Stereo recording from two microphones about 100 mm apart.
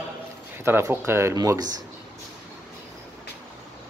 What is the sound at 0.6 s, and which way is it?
Speech, 25° right (ahead or behind).